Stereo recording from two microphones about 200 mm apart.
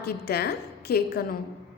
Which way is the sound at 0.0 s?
50° left (ahead or behind).